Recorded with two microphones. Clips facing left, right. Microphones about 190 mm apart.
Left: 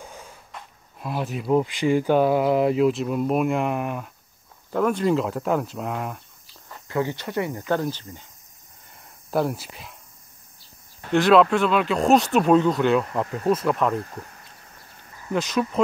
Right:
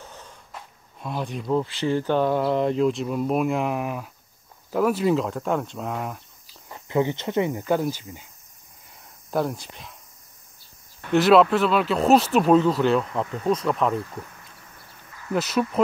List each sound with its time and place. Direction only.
0.0 s snort: 10° left (ahead or behind)
0.5 s speech: 5° left (ahead or behind)
6.7 s speech: 20° right (ahead or behind)
9.0 s cricket: 5° left (ahead or behind)
11.1 s speech: 5° right (ahead or behind)
15.3 s speech: 5° right (ahead or behind)